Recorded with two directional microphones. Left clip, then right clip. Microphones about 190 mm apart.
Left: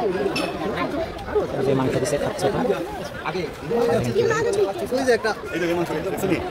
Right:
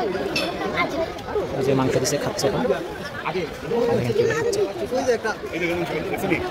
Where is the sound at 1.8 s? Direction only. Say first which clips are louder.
Right 1 dB; 5° right (ahead or behind).